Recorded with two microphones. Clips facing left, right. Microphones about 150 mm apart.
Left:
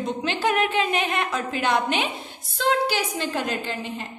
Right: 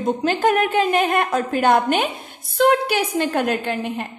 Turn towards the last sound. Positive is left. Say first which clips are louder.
# right 6 dB
turn(degrees=-60)  # may be behind; listen again after turning